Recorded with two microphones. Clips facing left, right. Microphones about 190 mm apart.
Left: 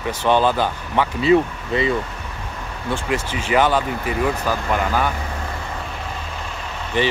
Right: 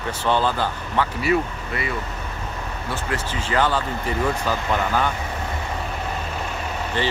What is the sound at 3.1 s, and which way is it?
Speech, 15° left (ahead or behind).